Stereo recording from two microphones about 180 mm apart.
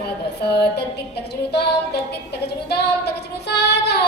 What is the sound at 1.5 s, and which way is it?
Speech, 65° left (ahead or behind).